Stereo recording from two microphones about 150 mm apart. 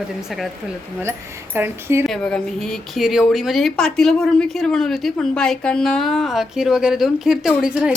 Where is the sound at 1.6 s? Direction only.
15° right (ahead or behind).